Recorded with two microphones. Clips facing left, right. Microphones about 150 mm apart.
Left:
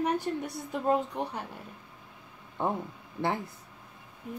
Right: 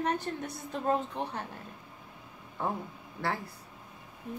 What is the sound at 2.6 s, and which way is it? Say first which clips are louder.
Speech: left 3 dB; 20° left (ahead or behind).